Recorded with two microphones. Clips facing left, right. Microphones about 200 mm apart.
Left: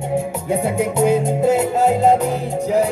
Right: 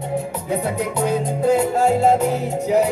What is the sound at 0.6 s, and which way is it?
Music, 25° left (ahead or behind).